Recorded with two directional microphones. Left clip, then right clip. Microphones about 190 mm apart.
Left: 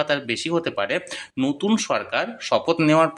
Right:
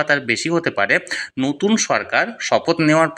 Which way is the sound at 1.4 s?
10° left (ahead or behind).